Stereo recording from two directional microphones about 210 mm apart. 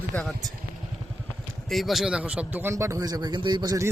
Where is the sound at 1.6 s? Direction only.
Centre (ahead or behind).